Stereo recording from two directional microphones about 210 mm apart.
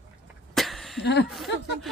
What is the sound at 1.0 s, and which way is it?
Speech, 55° left (ahead or behind).